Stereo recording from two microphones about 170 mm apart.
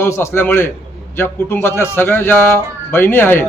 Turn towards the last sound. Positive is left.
turn(degrees=10)  # may be behind; listen again after turning